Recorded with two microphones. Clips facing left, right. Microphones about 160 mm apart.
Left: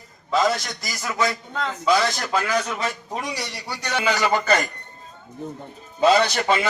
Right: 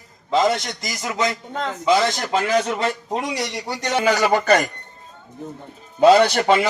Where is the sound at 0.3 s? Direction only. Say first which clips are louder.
Right 2 dB; 25° right (ahead or behind).